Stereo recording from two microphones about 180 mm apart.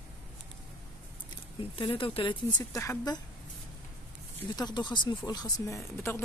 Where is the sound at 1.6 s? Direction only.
30° left (ahead or behind).